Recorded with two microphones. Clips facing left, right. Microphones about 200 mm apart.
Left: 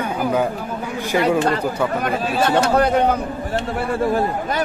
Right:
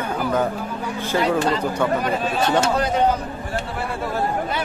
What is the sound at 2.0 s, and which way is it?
Speech, 60° left (ahead or behind).